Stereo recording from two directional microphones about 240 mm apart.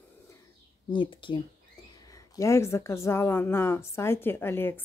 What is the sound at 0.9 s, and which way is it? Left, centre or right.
Speech, centre.